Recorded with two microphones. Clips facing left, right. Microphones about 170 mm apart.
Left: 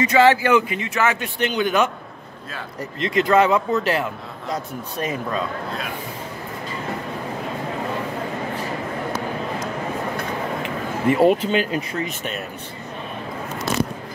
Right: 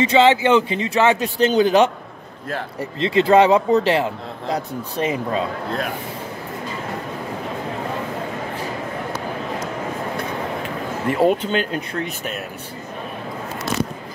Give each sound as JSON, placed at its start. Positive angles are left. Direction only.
{"t": 0.0, "sound": "a man's voice", "side_deg": -25}
{"t": 11.1, "sound": "speech", "side_deg": 0}